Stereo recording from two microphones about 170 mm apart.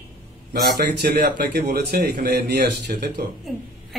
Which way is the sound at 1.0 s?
70° right (ahead or behind).